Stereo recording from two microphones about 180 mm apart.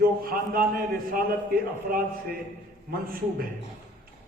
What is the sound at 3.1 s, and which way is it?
Speech, 55° right (ahead or behind).